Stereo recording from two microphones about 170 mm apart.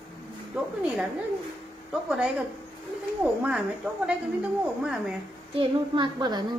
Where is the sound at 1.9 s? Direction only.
5° right (ahead or behind).